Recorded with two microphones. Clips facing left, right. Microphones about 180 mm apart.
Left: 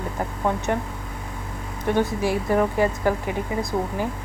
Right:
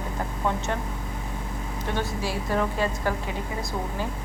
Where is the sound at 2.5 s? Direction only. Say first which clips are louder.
Left 4 dB; 15° left (ahead or behind).